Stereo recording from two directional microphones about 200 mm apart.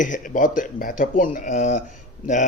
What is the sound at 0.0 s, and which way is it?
A man's voice, 40° left (ahead or behind).